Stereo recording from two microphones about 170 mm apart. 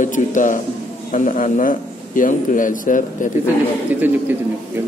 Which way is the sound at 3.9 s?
10° right (ahead or behind).